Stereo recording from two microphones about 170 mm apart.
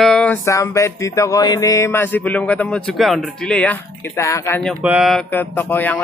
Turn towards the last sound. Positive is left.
turn(degrees=10)  # may be behind; listen again after turning